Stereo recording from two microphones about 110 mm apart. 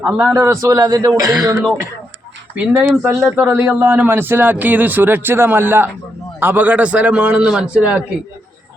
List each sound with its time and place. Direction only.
0.0 s a man's voice: 5° right (ahead or behind)
0.3 s speech: 25° right (ahead or behind)
3.2 s a man's voice: 10° right (ahead or behind)